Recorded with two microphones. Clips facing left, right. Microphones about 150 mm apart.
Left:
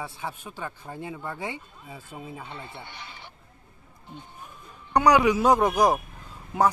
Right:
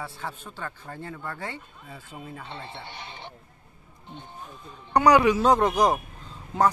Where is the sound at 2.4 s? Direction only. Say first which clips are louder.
Right 1 dB; 30° right (ahead or behind).